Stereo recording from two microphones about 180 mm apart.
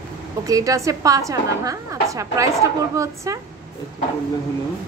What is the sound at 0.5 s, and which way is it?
A woman's voice, 20° right (ahead or behind).